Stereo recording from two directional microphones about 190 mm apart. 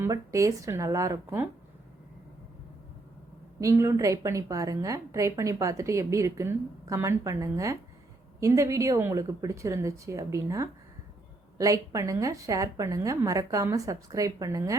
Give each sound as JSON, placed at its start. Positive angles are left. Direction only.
{"t": 0.0, "sound": "a woman's voice", "side_deg": -15}
{"t": 3.6, "sound": "a woman's voice", "side_deg": -15}